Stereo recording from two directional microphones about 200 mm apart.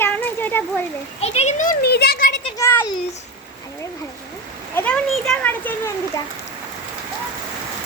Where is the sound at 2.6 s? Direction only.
10° left (ahead or behind).